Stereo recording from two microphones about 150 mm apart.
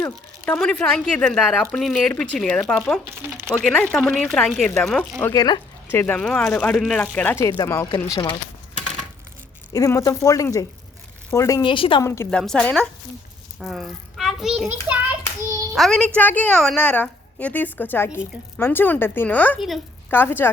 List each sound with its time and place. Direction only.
0.0 s a woman's voice: 15° left (ahead or behind)
5.2 s a woman's voice: 25° left (ahead or behind)
7.4 s speech: 25° left (ahead or behind)
9.7 s speech: 25° left (ahead or behind)
11.6 s a woman's voice: 35° left (ahead or behind)
12.0 s a woman's voice: 20° left (ahead or behind)
12.3 s a child's voice: 5° left (ahead or behind)
15.7 s a woman's voice: 5° left (ahead or behind)
19.5 s speech: centre (ahead or behind)
20.1 s a woman's voice: 15° left (ahead or behind)